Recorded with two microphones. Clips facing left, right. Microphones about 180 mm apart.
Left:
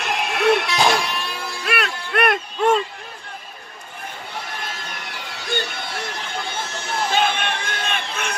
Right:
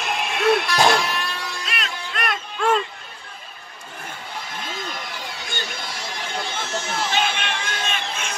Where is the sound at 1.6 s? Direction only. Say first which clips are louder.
Left 6 dB; 65° left (ahead or behind).